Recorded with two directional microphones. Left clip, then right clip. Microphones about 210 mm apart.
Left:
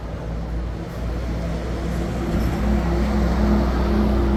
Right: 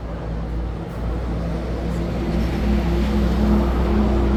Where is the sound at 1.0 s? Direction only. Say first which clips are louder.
Right 2 dB; 15° left (ahead or behind).